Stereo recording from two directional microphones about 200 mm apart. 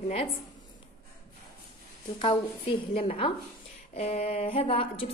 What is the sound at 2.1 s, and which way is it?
A woman's voice, 25° left (ahead or behind).